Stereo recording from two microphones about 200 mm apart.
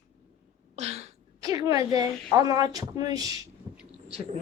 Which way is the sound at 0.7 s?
35° right (ahead or behind).